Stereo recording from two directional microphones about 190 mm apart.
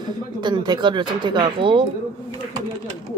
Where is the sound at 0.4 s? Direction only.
25° right (ahead or behind).